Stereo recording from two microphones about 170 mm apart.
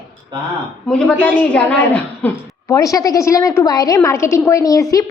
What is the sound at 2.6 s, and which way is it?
A woman's voice, 20° left (ahead or behind).